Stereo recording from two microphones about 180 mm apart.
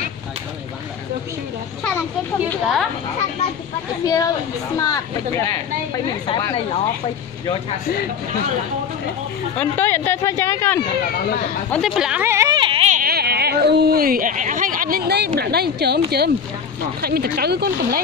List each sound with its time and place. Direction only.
2.5 s speech: centre (ahead or behind)
4.0 s speech: 20° left (ahead or behind)
9.6 s speech: 10° left (ahead or behind)
11.7 s speech: centre (ahead or behind); by 12.9 s 30° right (ahead or behind)
12.9 s speech: 55° right (ahead or behind)